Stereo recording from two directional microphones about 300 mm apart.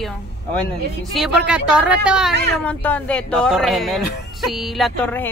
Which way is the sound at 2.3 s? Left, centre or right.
Right.